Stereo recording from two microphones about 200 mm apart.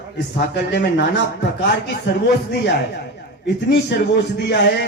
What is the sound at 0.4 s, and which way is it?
A man's voice, 55° left (ahead or behind).